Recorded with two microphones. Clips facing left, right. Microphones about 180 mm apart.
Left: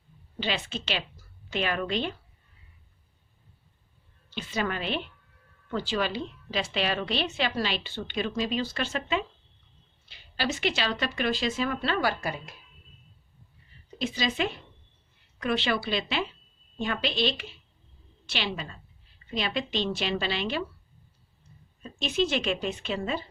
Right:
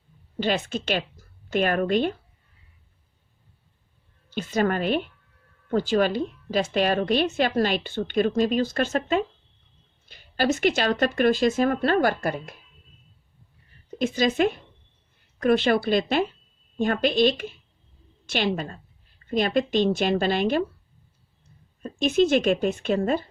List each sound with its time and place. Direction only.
0.3 s a woman's voice: 45° right (ahead or behind)
4.3 s a woman's voice: 45° right (ahead or behind)
14.0 s a woman's voice: 50° right (ahead or behind)
21.8 s a woman's voice: 50° right (ahead or behind)